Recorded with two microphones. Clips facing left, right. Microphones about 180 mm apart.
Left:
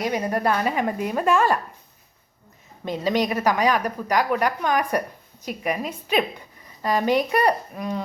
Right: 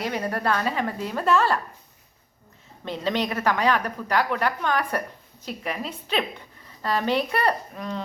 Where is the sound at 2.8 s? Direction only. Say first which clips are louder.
Left 3 dB; 10° left (ahead or behind).